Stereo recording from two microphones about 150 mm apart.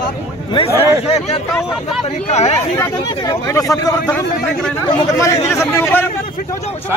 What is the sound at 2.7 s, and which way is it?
Speech, 20° left (ahead or behind).